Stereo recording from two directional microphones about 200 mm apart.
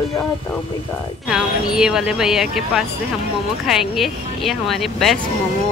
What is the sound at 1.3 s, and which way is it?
Speech, 5° right (ahead or behind).